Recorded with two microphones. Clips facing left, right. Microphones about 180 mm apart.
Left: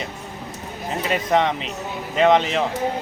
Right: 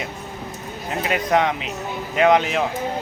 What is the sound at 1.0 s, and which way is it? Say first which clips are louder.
A man's voice: even; centre (ahead or behind).